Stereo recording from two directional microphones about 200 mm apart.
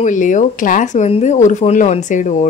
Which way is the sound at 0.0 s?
40° left (ahead or behind).